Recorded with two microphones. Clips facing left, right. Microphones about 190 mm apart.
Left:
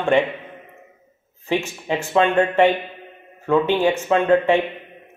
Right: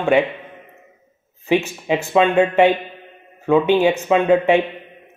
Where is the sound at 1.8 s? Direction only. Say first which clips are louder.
Left 1 dB; 10° right (ahead or behind).